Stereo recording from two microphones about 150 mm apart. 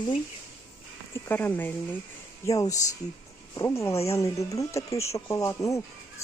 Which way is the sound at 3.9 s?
45° left (ahead or behind).